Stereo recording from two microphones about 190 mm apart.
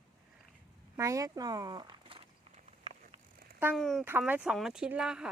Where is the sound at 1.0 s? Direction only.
15° right (ahead or behind).